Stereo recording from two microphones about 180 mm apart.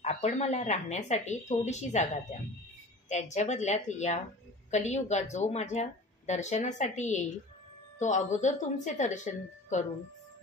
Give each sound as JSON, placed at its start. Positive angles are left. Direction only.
{"t": 0.0, "sound": "a woman's voice", "side_deg": 35}
{"t": 3.1, "sound": "a woman's voice", "side_deg": 40}